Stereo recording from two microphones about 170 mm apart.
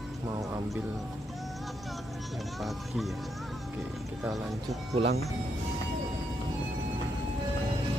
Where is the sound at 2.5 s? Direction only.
Centre (ahead or behind).